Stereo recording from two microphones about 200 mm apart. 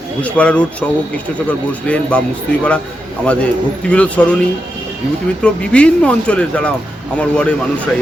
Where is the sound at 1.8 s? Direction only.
5° left (ahead or behind).